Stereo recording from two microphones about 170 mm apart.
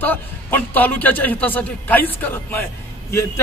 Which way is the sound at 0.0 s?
10° left (ahead or behind).